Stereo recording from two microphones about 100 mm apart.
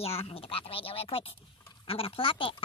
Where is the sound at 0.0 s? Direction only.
80° left.